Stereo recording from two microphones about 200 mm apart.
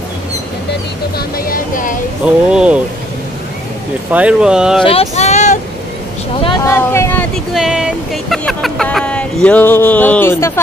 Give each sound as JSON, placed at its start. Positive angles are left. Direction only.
{"t": 1.1, "sound": "vehicle", "side_deg": 45}
{"t": 2.5, "sound": "vehicle", "side_deg": -5}
{"t": 4.1, "sound": "speech", "side_deg": -5}
{"t": 5.1, "sound": "vehicle", "side_deg": 35}
{"t": 6.4, "sound": "vehicle", "side_deg": 20}
{"t": 7.5, "sound": "vehicle", "side_deg": -5}